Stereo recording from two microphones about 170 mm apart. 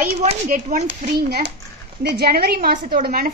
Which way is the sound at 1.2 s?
70° right (ahead or behind).